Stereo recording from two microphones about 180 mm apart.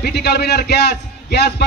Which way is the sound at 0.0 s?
65° left (ahead or behind).